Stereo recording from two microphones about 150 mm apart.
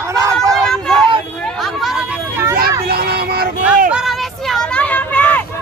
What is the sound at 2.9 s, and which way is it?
Vehicle, 90° right.